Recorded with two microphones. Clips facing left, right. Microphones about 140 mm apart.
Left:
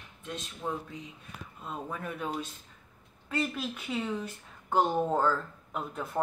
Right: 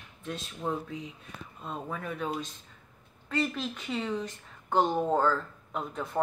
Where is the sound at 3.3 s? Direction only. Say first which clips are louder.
Right 1 dB; 5° left (ahead or behind).